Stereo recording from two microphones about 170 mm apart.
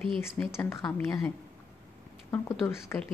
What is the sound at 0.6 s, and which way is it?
A woman's voice, 15° left (ahead or behind).